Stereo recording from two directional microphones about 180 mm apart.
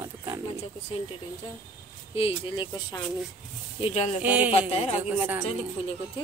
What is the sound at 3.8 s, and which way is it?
Speech, 35° left (ahead or behind).